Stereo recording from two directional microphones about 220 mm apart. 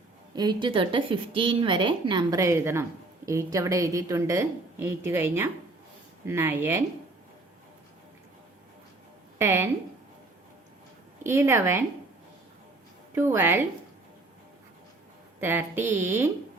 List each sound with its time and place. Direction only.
0.3 s a woman's voice: 20° right (ahead or behind)
9.4 s a woman's voice: 10° right (ahead or behind)
11.2 s a woman's voice: 10° right (ahead or behind)
13.1 s a woman's voice: 10° right (ahead or behind)
15.4 s a woman's voice: 10° right (ahead or behind)